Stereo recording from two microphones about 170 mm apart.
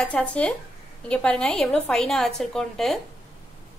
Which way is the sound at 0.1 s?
5° left (ahead or behind).